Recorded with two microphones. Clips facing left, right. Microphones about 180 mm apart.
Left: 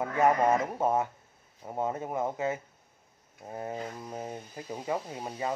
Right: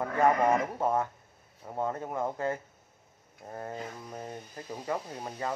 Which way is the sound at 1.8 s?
15° left (ahead or behind).